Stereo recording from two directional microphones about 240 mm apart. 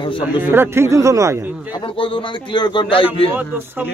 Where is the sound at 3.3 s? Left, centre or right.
Centre.